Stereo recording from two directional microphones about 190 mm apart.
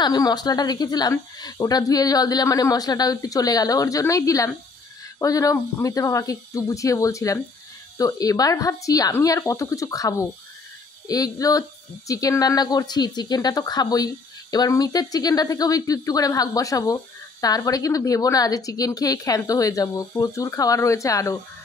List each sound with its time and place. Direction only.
0.0 s speech: 20° left (ahead or behind)